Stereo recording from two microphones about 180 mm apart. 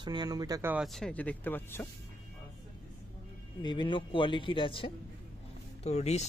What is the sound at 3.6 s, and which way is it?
Speech, 25° left (ahead or behind).